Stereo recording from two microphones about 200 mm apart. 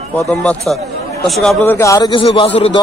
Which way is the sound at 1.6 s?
15° left (ahead or behind).